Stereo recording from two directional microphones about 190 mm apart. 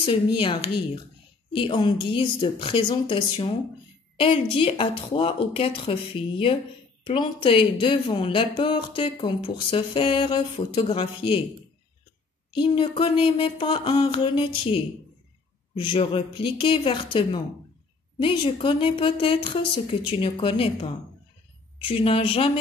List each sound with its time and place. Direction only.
0.0 s speech: 25° left (ahead or behind)
12.5 s speech: 25° left (ahead or behind)